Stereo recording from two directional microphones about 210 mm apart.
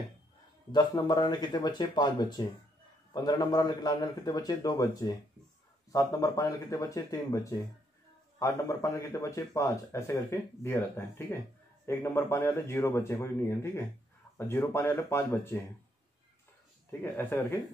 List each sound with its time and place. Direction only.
0.7 s a man's voice: 20° left (ahead or behind)
17.0 s speech: 10° left (ahead or behind)